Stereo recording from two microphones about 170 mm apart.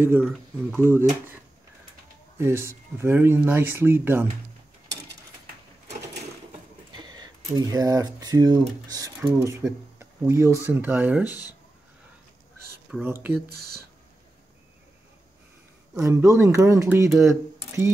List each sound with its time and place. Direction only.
0.7 s speech: 15° right (ahead or behind)
2.3 s speech: 15° right (ahead or behind)
7.0 s speech: 25° right (ahead or behind); by 11.3 s 10° right (ahead or behind)
13.0 s speech: 15° right (ahead or behind)
13.5 s speech: 65° right (ahead or behind)
16.0 s speech: 15° right (ahead or behind)